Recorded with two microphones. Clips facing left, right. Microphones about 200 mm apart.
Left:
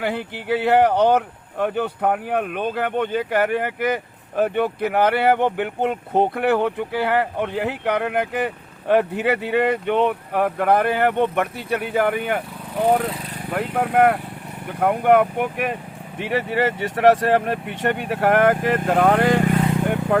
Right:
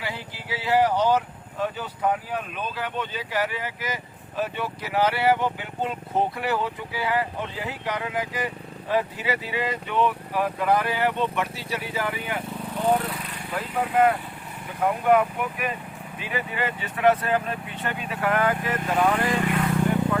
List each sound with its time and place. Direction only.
0.0 s speech: 60° left (ahead or behind)
13.5 s speech: 60° left (ahead or behind)